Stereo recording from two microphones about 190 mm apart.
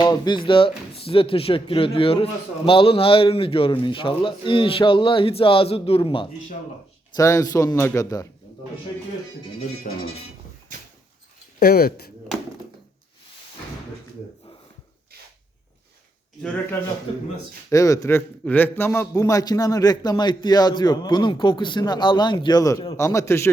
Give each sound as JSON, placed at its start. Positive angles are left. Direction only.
{"t": 0.0, "sound": "a man's voice", "side_deg": 25}
{"t": 7.2, "sound": "a man's voice", "side_deg": 15}
{"t": 9.9, "sound": "speech", "side_deg": 45}
{"t": 10.7, "sound": "dog", "side_deg": -45}
{"t": 11.6, "sound": "speech", "side_deg": 55}
{"t": 17.1, "sound": "a man's voice", "side_deg": 30}
{"t": 17.7, "sound": "a man's voice", "side_deg": 15}